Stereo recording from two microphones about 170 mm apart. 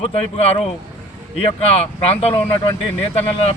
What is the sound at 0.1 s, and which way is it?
Speech, 35° left (ahead or behind).